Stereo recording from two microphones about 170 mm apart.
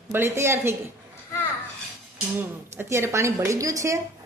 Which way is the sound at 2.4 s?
15° right (ahead or behind).